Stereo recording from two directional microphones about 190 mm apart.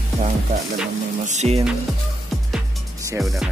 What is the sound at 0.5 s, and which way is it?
Speech, 40° right (ahead or behind).